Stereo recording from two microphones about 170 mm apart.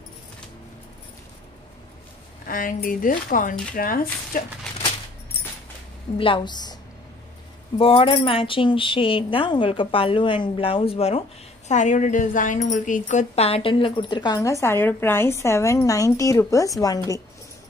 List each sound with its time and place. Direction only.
2.4 s a woman's voice: 55° left (ahead or behind)
6.1 s a woman's voice: 30° left (ahead or behind)